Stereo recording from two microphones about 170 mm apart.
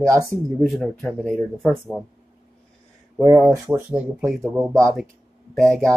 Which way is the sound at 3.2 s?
5° right (ahead or behind).